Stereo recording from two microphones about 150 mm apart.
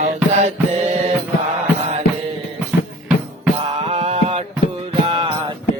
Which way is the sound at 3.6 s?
40° right (ahead or behind).